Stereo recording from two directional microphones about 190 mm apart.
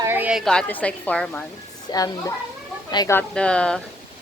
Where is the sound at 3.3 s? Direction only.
5° left (ahead or behind).